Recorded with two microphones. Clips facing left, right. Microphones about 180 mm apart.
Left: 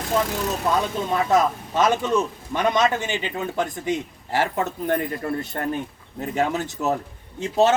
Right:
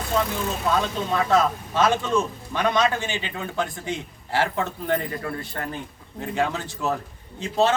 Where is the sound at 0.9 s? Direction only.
20° left (ahead or behind).